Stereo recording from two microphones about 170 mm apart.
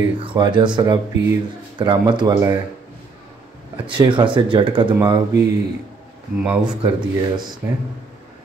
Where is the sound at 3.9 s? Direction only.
25° right (ahead or behind).